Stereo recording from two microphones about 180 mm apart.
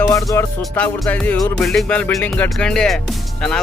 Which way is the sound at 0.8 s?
10° left (ahead or behind).